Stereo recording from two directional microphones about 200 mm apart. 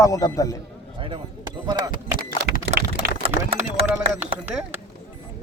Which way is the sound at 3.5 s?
30° right (ahead or behind).